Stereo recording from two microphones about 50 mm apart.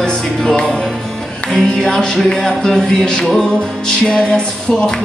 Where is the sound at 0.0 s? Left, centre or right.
Centre.